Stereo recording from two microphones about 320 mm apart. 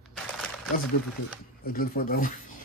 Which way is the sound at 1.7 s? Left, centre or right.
Left.